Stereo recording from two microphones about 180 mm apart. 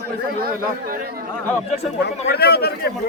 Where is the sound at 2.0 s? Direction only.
65° left (ahead or behind).